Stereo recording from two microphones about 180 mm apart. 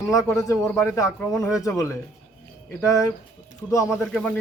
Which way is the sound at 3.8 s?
Centre (ahead or behind).